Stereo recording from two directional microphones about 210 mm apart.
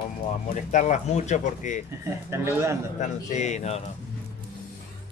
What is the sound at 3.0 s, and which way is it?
Speech, 35° left (ahead or behind).